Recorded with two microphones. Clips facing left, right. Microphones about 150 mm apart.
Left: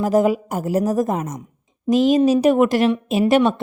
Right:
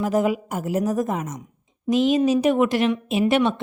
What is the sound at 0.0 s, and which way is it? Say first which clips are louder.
A woman's voice: left 4 dB; 40° left (ahead or behind).